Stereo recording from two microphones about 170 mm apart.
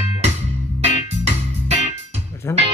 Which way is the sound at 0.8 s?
40° right (ahead or behind).